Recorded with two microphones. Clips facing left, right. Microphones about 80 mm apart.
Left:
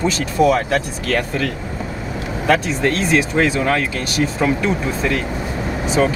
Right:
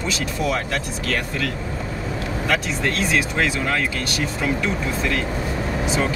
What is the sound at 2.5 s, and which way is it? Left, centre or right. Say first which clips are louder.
Speech: left 7 dB; left.